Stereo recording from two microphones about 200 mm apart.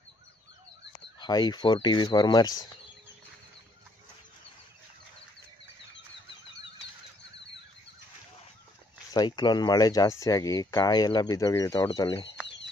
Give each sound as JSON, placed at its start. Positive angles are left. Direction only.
{"t": 1.2, "sound": "speech", "side_deg": 20}
{"t": 9.1, "sound": "speech", "side_deg": 20}